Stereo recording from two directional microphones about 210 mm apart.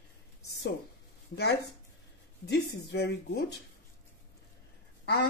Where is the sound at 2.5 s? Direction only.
50° left (ahead or behind).